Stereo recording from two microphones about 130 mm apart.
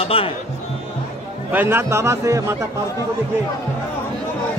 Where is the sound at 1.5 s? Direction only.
20° right (ahead or behind).